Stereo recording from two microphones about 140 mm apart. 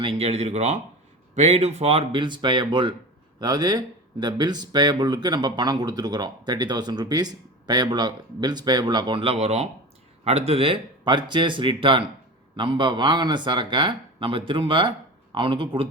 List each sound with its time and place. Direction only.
0.0 s speech: 45° right (ahead or behind)